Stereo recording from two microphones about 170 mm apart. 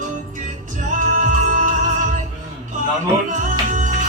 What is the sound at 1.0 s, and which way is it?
Music, 50° right (ahead or behind).